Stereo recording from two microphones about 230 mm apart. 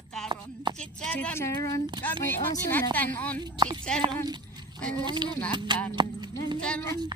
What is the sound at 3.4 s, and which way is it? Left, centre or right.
Speech, centre.